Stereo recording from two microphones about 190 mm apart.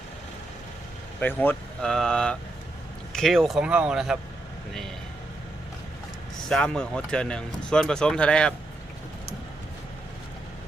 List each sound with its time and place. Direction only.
1.2 s speech: 10° left (ahead or behind)
6.5 s speech: 5° left (ahead or behind)